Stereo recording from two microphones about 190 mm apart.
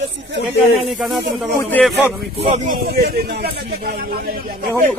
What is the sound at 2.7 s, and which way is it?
Speech, 55° right (ahead or behind).